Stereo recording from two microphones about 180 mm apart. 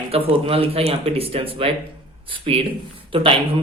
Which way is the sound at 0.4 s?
30° right (ahead or behind).